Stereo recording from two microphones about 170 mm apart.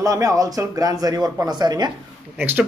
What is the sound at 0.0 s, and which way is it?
A man's voice, 20° right (ahead or behind).